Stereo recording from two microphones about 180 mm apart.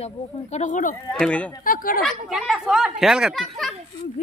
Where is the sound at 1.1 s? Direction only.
5° left (ahead or behind).